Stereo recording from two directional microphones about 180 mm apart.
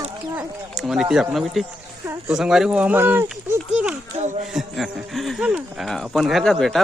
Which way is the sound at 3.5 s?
5° right (ahead or behind).